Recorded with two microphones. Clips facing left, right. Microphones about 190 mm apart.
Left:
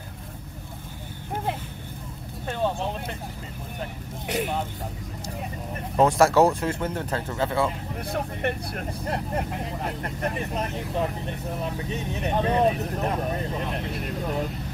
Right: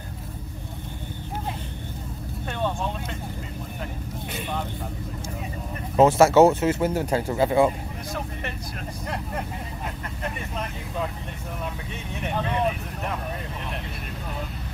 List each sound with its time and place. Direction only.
5.9 s speech: centre (ahead or behind)
8.1 s speech: 55° left (ahead or behind)
9.0 s speech: 30° left (ahead or behind)
10.5 s speech: 40° left (ahead or behind)